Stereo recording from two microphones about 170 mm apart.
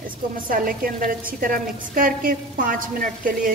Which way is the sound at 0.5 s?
55° right (ahead or behind).